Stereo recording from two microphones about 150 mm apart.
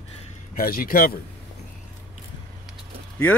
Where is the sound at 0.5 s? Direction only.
75° left (ahead or behind).